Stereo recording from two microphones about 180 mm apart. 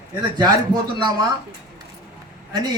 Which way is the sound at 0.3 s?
20° right (ahead or behind).